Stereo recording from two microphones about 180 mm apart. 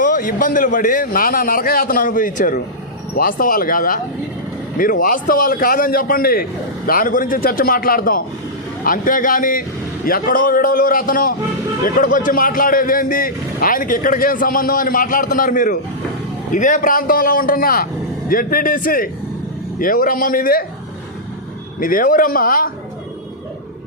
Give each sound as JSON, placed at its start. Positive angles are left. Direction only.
{"t": 0.0, "sound": "speech", "side_deg": 50}
{"t": 21.8, "sound": "speech", "side_deg": 50}